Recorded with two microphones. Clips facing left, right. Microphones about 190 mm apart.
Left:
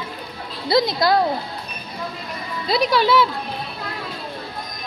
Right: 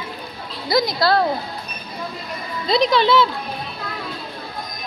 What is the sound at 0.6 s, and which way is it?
Speech, 25° left (ahead or behind).